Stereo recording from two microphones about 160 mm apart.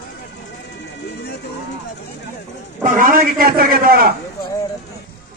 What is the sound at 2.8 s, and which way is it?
A man's voice, 60° right (ahead or behind).